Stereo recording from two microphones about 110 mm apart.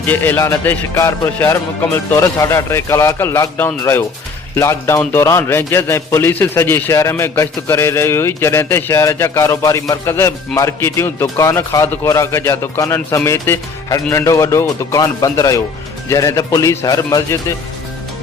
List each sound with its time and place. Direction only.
0.1 s a man's voice: 15° left (ahead or behind); by 17.4 s 35° left (ahead or behind)